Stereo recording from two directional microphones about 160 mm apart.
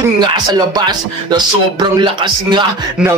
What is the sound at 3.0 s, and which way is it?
Music, 5° right (ahead or behind).